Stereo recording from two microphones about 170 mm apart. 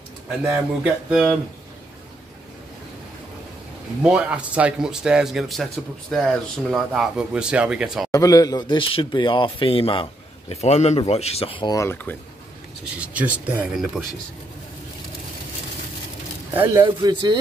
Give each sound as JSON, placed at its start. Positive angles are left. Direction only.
{"t": 0.4, "sound": "speech", "side_deg": -10}
{"t": 4.0, "sound": "speech", "side_deg": -5}
{"t": 8.1, "sound": "speech", "side_deg": 20}
{"t": 13.0, "sound": "speech", "side_deg": -10}
{"t": 16.8, "sound": "speech", "side_deg": -25}